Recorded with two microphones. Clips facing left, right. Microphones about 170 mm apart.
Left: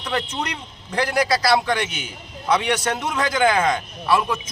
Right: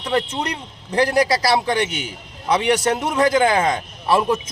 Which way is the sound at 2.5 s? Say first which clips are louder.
Right 3 dB; 25° right (ahead or behind).